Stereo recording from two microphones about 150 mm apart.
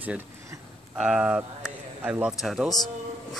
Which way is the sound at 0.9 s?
5° right (ahead or behind).